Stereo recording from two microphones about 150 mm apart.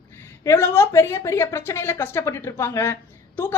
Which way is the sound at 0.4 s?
15° left (ahead or behind).